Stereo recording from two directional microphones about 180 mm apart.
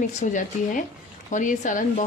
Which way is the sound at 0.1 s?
45° left (ahead or behind).